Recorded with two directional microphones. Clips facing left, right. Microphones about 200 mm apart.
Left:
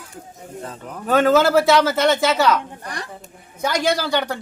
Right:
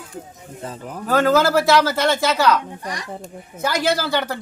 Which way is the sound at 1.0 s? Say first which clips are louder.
Left 1 dB; 20° left (ahead or behind).